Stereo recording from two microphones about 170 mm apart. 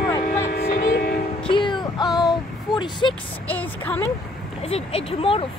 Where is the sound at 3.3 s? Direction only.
10° left (ahead or behind).